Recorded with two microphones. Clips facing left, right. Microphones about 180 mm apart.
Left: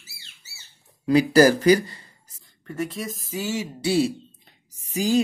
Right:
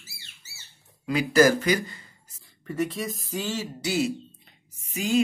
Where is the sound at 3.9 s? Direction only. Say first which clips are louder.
Left 5 dB; 30° left (ahead or behind).